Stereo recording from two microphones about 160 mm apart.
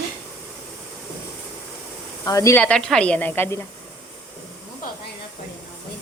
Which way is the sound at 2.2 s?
20° left (ahead or behind).